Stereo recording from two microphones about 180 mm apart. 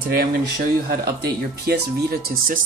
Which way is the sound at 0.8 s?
60° right (ahead or behind).